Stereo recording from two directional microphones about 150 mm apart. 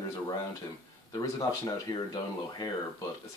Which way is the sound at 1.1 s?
25° left (ahead or behind).